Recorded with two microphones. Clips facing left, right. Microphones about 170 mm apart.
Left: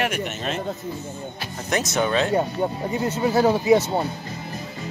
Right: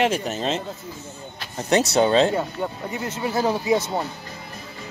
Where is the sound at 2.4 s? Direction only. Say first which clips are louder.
Left 4 dB; 25° left (ahead or behind).